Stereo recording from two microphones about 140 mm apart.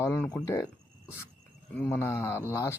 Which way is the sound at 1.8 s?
15° left (ahead or behind).